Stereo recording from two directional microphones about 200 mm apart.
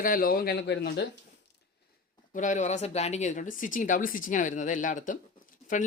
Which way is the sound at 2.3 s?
40° left (ahead or behind).